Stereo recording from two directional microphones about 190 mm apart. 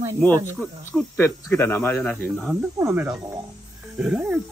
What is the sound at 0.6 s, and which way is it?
Speech, 10° left (ahead or behind).